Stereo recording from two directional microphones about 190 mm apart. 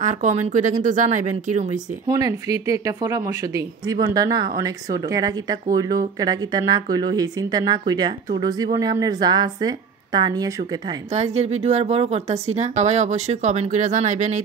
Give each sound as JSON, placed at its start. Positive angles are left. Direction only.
{"t": 0.0, "sound": "a woman's voice", "side_deg": -40}
{"t": 2.0, "sound": "speech", "side_deg": -20}
{"t": 11.1, "sound": "a woman's voice", "side_deg": -35}